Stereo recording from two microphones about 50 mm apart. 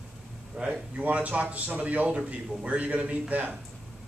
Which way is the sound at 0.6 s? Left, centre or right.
Right.